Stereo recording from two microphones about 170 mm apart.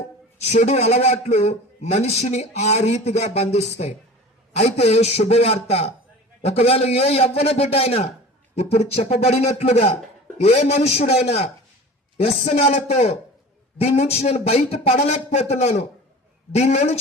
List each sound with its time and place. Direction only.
0.5 s a man's voice: 40° left (ahead or behind)